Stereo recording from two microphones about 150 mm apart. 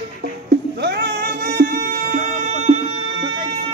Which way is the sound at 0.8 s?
90° right.